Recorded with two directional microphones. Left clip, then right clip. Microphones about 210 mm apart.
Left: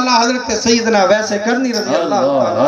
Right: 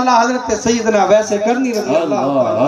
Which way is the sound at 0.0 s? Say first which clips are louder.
Right 1 dB; 15° left (ahead or behind).